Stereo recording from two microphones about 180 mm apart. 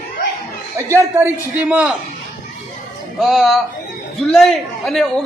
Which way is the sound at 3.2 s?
Centre (ahead or behind).